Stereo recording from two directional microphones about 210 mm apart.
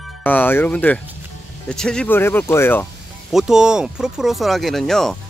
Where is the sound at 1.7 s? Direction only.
5° left (ahead or behind).